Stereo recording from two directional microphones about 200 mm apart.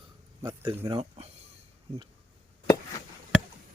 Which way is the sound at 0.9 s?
30° right (ahead or behind).